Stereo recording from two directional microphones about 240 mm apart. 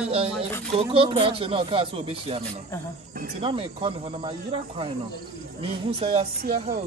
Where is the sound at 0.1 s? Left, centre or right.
Right.